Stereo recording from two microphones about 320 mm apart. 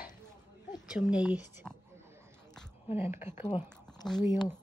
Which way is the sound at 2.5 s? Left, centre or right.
Centre.